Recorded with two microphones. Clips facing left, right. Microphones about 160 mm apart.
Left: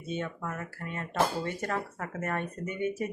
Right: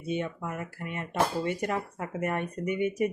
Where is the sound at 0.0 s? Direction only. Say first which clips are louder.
Right 3 dB; 10° right (ahead or behind).